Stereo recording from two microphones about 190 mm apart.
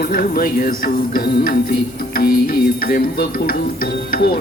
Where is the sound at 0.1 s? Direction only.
50° left (ahead or behind).